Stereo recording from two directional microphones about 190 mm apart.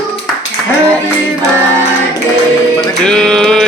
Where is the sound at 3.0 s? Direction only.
5° left (ahead or behind).